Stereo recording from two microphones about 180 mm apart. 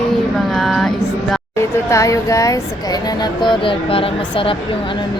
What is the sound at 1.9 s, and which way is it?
Speech, 15° left (ahead or behind).